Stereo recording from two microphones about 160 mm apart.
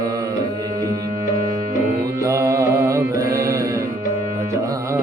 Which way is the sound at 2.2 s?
20° right (ahead or behind).